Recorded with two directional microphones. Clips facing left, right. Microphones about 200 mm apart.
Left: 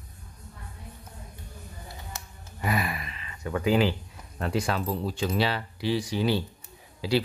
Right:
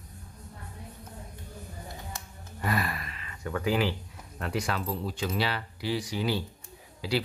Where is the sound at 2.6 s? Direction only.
15° left (ahead or behind).